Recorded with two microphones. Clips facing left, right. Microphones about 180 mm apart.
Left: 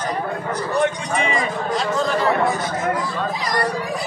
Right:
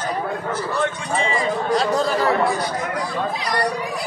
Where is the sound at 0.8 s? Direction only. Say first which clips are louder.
Left 3 dB; 15° left (ahead or behind).